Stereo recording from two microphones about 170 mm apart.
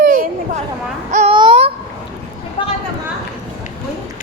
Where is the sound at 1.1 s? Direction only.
40° right (ahead or behind).